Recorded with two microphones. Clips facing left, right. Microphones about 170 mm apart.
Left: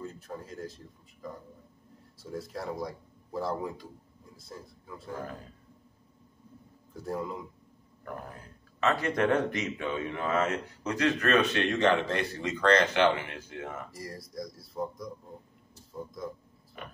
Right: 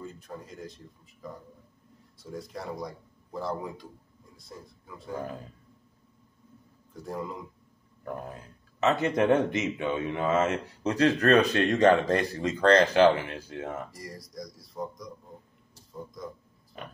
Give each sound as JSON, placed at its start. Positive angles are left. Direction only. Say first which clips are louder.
{"t": 0.0, "sound": "speech", "louder": "left 1 dB", "side_deg": 0}
{"t": 2.1, "sound": "speech", "louder": "left 1 dB", "side_deg": 0}
{"t": 6.9, "sound": "speech", "louder": "left 1 dB", "side_deg": 0}
{"t": 8.0, "sound": "speech", "louder": "right 4 dB", "side_deg": -20}
{"t": 13.9, "sound": "speech", "louder": "left 2 dB", "side_deg": 0}